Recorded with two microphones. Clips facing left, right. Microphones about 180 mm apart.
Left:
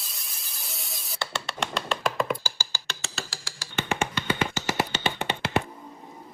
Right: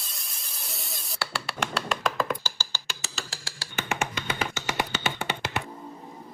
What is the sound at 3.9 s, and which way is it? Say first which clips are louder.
Music: left 4 dB; 30° left (ahead or behind).